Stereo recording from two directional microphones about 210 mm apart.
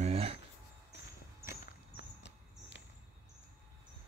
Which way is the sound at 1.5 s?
55° left (ahead or behind).